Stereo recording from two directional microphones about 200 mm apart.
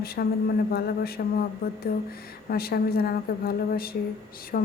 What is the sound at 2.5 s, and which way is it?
A woman's voice, 50° left (ahead or behind).